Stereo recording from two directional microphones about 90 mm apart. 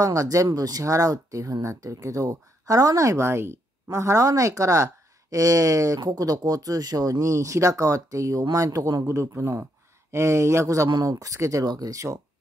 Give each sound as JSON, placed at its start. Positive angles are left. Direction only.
{"t": 0.0, "sound": "speech", "side_deg": -40}
{"t": 10.9, "sound": "speech", "side_deg": -45}
{"t": 11.6, "sound": "speech", "side_deg": -45}